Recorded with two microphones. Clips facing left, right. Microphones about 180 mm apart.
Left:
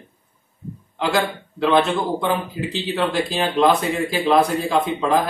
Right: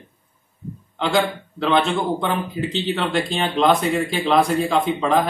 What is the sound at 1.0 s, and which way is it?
A man's voice, centre (ahead or behind).